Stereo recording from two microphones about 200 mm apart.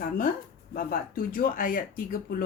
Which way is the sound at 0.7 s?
45° left (ahead or behind).